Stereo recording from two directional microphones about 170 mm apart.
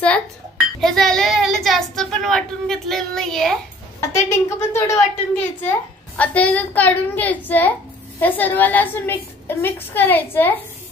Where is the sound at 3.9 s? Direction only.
15° left (ahead or behind).